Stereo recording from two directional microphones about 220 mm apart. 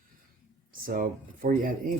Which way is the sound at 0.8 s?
40° right (ahead or behind).